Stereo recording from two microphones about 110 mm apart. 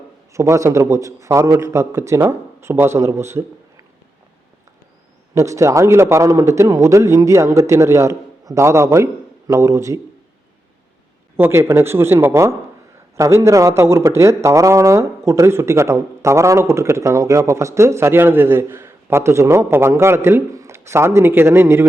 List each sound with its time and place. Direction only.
0.3 s a man's voice: 25° right (ahead or behind)
5.3 s speech: 25° right (ahead or behind)
11.3 s speech: 20° right (ahead or behind)